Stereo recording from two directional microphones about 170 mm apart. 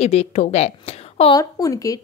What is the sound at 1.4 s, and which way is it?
Speech, 20° left (ahead or behind).